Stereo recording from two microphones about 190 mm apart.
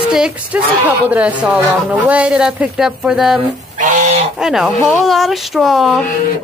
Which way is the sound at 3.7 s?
40° right (ahead or behind).